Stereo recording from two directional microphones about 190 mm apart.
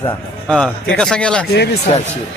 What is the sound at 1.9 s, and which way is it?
Speech, 35° left (ahead or behind).